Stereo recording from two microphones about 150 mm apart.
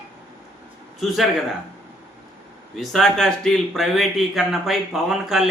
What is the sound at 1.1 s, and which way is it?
Speech, centre (ahead or behind).